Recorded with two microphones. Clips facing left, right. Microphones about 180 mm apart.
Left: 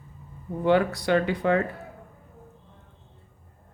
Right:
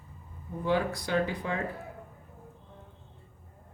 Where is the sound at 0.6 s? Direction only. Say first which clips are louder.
Left 7 dB; 70° left (ahead or behind).